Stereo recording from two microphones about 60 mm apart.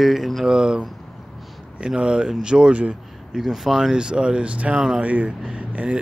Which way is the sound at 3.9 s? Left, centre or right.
Centre.